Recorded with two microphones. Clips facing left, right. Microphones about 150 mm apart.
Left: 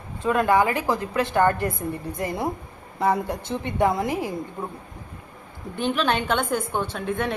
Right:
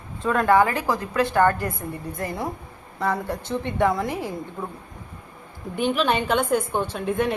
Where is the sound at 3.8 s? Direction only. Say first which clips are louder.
Left 1 dB; 15° left (ahead or behind).